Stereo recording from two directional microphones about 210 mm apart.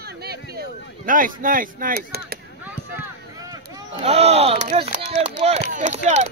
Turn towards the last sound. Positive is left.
turn(degrees=-35)  # may be behind; listen again after turning